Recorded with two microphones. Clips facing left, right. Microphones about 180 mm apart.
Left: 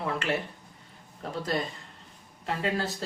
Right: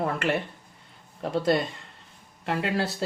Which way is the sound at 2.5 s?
70° right (ahead or behind).